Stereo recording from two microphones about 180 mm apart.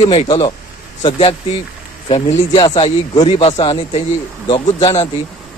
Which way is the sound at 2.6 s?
30° left (ahead or behind).